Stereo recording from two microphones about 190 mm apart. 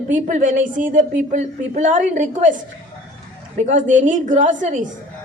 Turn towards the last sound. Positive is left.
turn(degrees=-40)  # may be behind; listen again after turning